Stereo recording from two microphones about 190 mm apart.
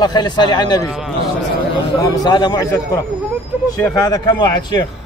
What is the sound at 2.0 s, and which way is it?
A man's voice, 20° left (ahead or behind).